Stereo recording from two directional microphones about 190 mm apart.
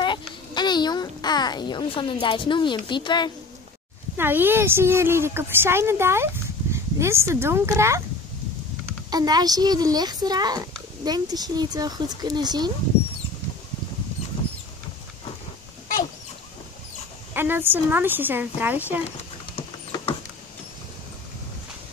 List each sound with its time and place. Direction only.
0.0 s a sound: 25° left (ahead or behind)
4.2 s speech: 10° right (ahead or behind)
9.1 s speech: 20° right (ahead or behind)
17.3 s speech: 10° right (ahead or behind)
19.5 s rodents: 30° left (ahead or behind)